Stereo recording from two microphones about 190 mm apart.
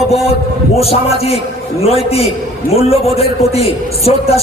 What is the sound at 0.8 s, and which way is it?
A man's voice, 30° left (ahead or behind).